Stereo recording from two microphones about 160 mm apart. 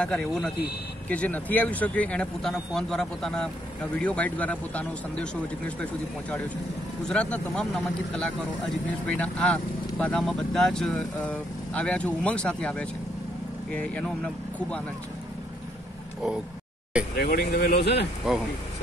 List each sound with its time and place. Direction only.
0.0 s speech: 5° left (ahead or behind)
7.0 s speech: 5° left (ahead or behind)
17.1 s speech: 70° left (ahead or behind); by 18.0 s 90° left
18.3 s speech: 5° right (ahead or behind)